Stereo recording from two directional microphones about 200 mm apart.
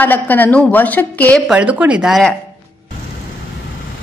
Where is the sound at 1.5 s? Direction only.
5° right (ahead or behind).